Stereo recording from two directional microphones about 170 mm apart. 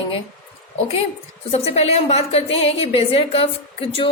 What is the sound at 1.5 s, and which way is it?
A woman's voice, 35° left (ahead or behind).